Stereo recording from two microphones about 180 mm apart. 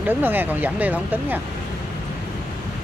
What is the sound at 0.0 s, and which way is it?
Speech, 10° right (ahead or behind).